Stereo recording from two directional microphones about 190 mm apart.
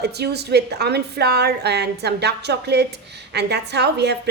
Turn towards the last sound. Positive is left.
turn(degrees=-60)  # may be behind; listen again after turning